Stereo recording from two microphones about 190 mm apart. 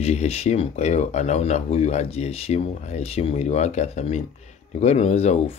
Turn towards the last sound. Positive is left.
turn(degrees=30)  # may be behind; listen again after turning